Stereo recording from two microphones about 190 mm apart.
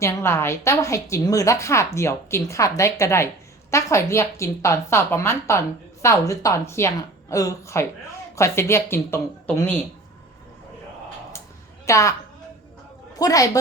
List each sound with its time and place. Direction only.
0.0 s a woman's voice: 15° left (ahead or behind)
11.9 s a woman's voice: 15° left (ahead or behind)
13.1 s a woman's voice: 20° left (ahead or behind)